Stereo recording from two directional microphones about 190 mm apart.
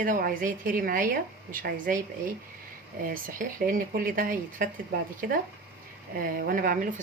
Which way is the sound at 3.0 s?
45° right (ahead or behind).